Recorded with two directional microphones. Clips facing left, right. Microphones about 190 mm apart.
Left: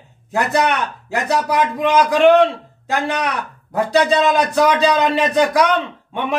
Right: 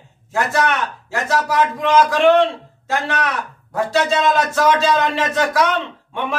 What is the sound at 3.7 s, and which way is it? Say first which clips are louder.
Speech: left 3 dB; 15° left (ahead or behind).